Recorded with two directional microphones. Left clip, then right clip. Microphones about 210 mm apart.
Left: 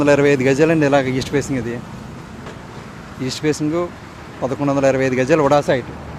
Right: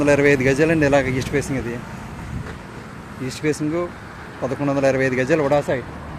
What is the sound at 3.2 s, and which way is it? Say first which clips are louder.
A man's voice: left 3 dB; 5° left (ahead or behind).